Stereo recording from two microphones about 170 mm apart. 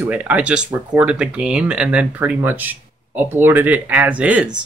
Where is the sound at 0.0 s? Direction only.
10° right (ahead or behind).